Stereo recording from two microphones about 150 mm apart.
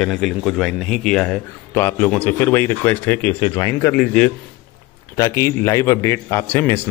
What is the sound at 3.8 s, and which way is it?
Speech, 5° left (ahead or behind).